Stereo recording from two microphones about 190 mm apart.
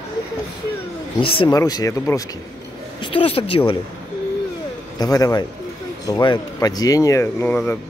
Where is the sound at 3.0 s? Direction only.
30° left (ahead or behind).